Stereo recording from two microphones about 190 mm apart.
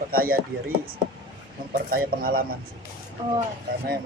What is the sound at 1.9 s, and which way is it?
Speech, 50° right (ahead or behind).